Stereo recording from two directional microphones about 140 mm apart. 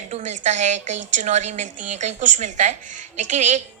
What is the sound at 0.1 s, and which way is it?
A woman's voice, 55° right (ahead or behind).